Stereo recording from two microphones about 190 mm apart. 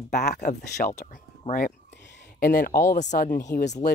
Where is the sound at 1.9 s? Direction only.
65° left (ahead or behind).